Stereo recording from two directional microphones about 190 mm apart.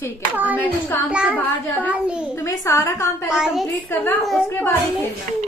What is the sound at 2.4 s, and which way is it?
Speech, 15° left (ahead or behind).